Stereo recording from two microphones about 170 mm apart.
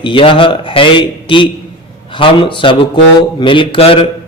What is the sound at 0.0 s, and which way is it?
Mantra, 30° left (ahead or behind).